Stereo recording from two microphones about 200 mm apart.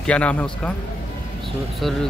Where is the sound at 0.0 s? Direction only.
5° left (ahead or behind).